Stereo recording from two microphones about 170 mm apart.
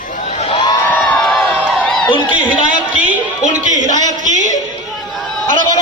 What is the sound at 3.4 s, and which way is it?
A man's voice, 45° right (ahead or behind).